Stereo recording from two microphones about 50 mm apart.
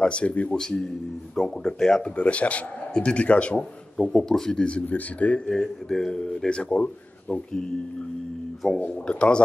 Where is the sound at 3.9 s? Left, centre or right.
Centre.